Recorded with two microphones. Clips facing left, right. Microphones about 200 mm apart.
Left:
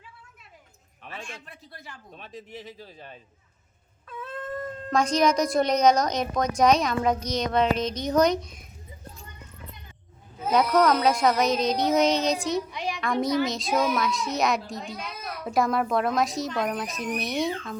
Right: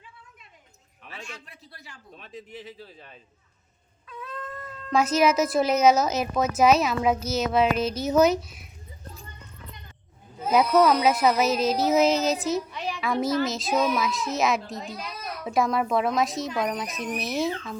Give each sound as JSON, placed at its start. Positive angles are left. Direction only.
{"t": 1.0, "sound": "a man's voice", "side_deg": 50}
{"t": 4.0, "sound": "cat", "side_deg": 50}
{"t": 4.9, "sound": "a child's voice", "side_deg": -5}
{"t": 10.5, "sound": "a child's voice", "side_deg": -5}
{"t": 12.7, "sound": "a sound", "side_deg": 15}
{"t": 13.4, "sound": "a child's voice", "side_deg": 0}